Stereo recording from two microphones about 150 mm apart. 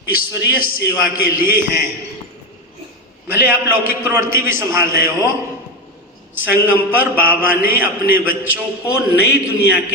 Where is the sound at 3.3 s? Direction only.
15° right (ahead or behind).